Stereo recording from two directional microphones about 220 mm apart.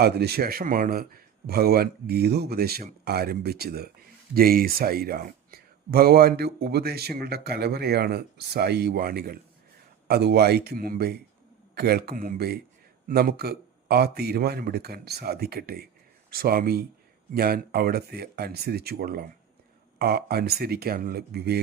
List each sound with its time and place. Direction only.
0.0 s speech: 45° right (ahead or behind)